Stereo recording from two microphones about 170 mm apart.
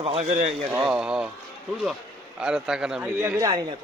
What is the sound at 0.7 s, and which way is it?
Speech, 5° right (ahead or behind).